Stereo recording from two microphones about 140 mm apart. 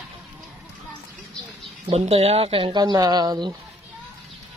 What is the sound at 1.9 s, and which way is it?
Speech, 45° right (ahead or behind).